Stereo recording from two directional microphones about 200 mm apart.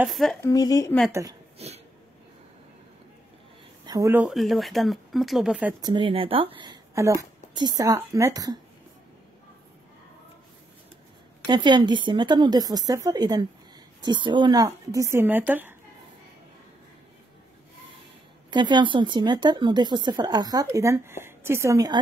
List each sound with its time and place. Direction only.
0.0 s speech: centre (ahead or behind)
0.4 s a woman's voice: 15° left (ahead or behind)
1.6 s a sound: 30° right (ahead or behind)
3.8 s speech: 15° right (ahead or behind)
5.8 s speech: 20° right (ahead or behind)
11.4 s a woman's voice: 20° right (ahead or behind)
18.5 s speech: 20° right (ahead or behind)